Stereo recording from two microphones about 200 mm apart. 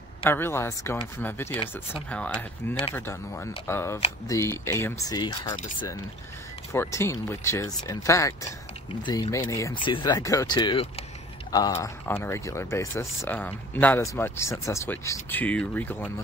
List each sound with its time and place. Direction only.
0.2 s speech: 10° left (ahead or behind)
6.7 s speech: 15° left (ahead or behind)